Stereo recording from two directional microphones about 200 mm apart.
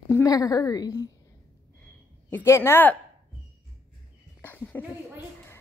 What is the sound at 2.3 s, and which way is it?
Speech, 15° left (ahead or behind).